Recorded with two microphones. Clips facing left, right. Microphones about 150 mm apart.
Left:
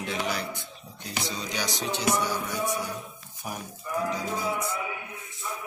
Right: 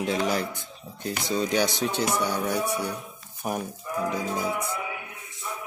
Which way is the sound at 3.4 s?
50° right (ahead or behind).